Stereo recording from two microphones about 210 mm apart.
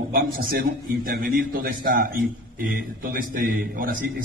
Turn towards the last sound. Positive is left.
turn(degrees=-40)  # may be behind; listen again after turning